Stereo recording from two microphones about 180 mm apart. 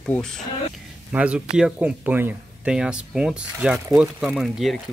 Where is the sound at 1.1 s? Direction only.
5° right (ahead or behind).